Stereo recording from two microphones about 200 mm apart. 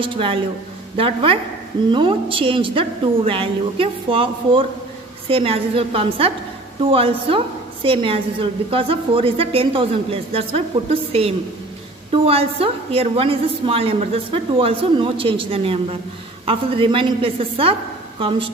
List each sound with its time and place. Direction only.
0.0 s a woman's voice: 25° right (ahead or behind)